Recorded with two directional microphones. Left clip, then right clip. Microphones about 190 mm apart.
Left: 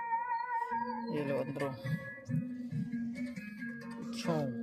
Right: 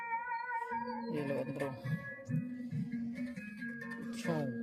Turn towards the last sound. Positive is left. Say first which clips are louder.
# left 2 dB
turn(degrees=0)  # may be behind; listen again after turning